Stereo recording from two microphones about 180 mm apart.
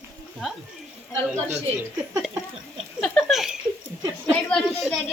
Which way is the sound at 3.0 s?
Centre (ahead or behind).